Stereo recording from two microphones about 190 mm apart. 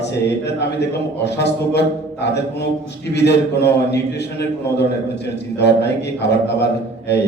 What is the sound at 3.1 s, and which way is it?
Speech, 60° left (ahead or behind).